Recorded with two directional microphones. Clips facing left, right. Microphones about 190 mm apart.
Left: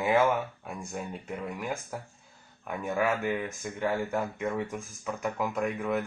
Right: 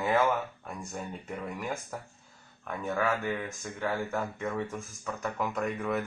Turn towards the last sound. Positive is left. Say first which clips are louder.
# left 1 dB
turn(degrees=5)  # may be behind; listen again after turning